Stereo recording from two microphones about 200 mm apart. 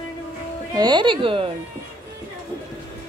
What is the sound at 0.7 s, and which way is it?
Speech, 20° right (ahead or behind).